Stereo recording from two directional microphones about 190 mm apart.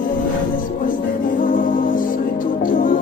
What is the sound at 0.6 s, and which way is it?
Music, 45° left (ahead or behind).